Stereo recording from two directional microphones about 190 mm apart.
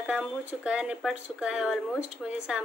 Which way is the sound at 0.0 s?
5° right (ahead or behind).